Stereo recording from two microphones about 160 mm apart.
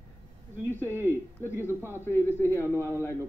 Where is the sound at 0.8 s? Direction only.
15° right (ahead or behind).